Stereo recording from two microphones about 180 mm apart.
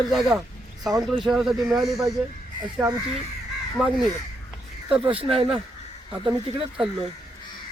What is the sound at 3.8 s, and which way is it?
Speech, centre (ahead or behind).